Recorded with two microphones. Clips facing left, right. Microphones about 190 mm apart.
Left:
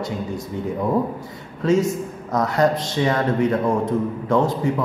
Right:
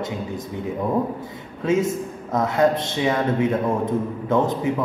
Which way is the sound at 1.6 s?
25° right (ahead or behind).